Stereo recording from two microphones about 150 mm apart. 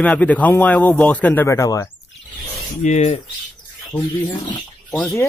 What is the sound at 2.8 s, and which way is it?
Cutlery, 50° left (ahead or behind).